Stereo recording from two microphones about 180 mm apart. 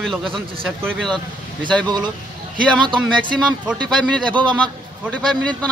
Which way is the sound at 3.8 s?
5° left (ahead or behind).